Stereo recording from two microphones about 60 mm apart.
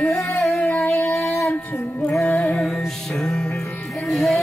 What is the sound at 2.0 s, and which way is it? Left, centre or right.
Music, centre.